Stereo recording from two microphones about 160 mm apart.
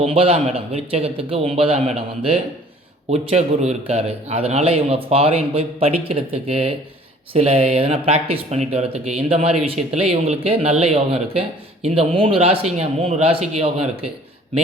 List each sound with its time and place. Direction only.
0.0 s speech: 35° right (ahead or behind)